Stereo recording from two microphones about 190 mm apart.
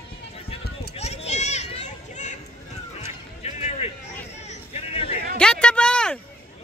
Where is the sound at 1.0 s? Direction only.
35° left (ahead or behind).